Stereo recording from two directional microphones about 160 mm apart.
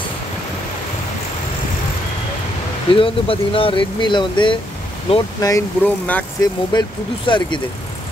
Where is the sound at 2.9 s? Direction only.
35° left (ahead or behind).